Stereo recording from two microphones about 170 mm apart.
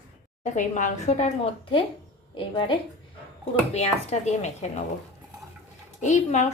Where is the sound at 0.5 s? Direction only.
45° left (ahead or behind).